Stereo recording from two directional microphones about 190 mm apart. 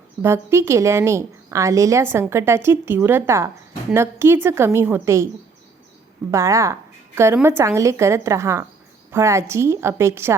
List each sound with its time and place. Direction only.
0.2 s a woman's voice: 15° right (ahead or behind)
6.3 s a woman's voice: 15° right (ahead or behind)